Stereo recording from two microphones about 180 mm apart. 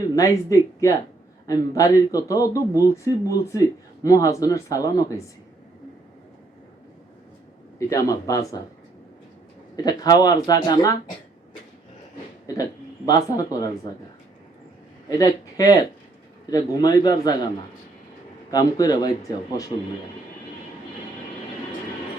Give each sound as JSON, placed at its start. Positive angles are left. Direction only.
{"t": 0.2, "sound": "speech", "side_deg": 20}
{"t": 7.8, "sound": "speech", "side_deg": 20}
{"t": 9.7, "sound": "speech", "side_deg": 20}
{"t": 13.1, "sound": "speech", "side_deg": 20}
{"t": 15.2, "sound": "speech", "side_deg": 20}
{"t": 18.5, "sound": "speech", "side_deg": 20}